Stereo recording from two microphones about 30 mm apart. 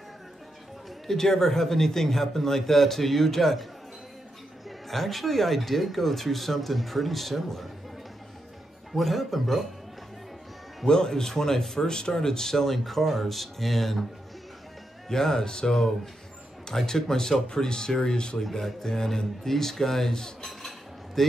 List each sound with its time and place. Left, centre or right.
1.0 s a man's voice: centre
4.6 s speech: centre
8.9 s speech: centre
10.9 s a man's voice: left; by 13.9 s centre
15.0 s a man's voice: centre
16.7 s a man's voice: centre
18.4 s a man's voice: centre
20.1 s speech: left
20.4 s cutlery: centre